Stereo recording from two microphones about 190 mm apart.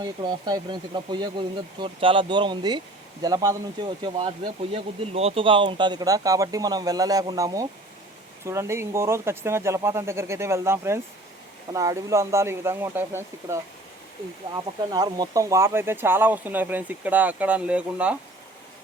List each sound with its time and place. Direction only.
0.0 s speech: 20° right (ahead or behind)